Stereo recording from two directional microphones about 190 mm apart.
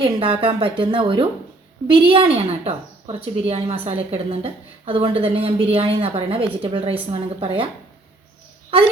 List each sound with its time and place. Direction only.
0.0 s a woman's voice: 30° right (ahead or behind)